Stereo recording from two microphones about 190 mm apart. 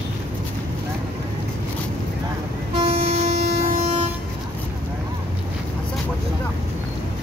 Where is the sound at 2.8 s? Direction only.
30° right (ahead or behind).